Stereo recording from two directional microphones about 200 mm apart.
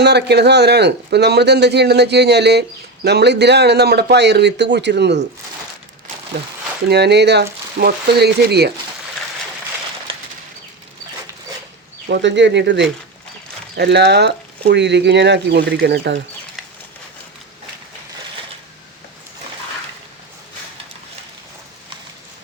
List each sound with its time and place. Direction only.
0.0 s speech: 55° right (ahead or behind)
6.8 s speech: 55° right (ahead or behind)
12.0 s speech: 60° right (ahead or behind)